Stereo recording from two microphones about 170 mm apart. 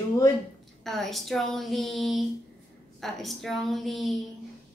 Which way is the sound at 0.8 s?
Centre (ahead or behind).